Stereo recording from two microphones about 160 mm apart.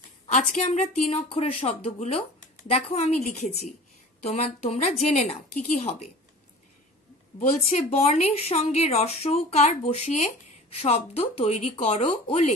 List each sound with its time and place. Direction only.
0.3 s speech: 50° left (ahead or behind)
7.7 s speech: 40° left (ahead or behind)